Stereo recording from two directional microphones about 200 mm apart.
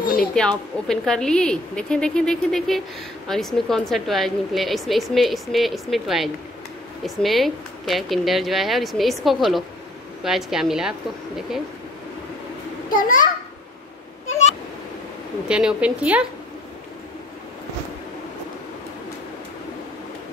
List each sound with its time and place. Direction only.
0.2 s a woman's voice: 5° left (ahead or behind)
12.9 s a child's voice: 40° left (ahead or behind)
15.4 s a woman's voice: 5° right (ahead or behind)